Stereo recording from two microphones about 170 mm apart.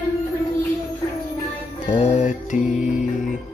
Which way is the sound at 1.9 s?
35° left (ahead or behind).